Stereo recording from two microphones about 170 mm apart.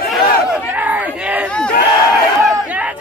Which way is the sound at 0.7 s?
10° right (ahead or behind).